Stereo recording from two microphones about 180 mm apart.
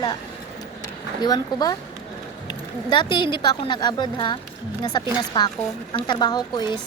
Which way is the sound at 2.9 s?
25° left (ahead or behind).